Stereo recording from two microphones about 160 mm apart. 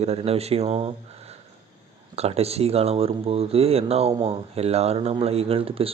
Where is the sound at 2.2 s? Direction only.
40° right (ahead or behind).